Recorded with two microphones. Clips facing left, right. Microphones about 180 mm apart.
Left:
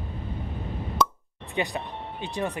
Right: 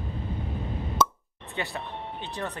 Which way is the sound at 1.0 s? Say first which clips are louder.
Even; centre (ahead or behind).